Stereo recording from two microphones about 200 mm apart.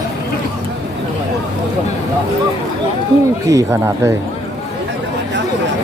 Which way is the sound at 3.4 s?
15° right (ahead or behind).